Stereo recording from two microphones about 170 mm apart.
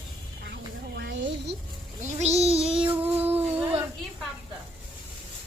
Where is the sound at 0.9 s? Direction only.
90° right.